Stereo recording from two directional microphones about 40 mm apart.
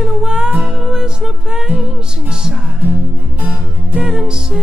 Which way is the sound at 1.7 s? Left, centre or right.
Right.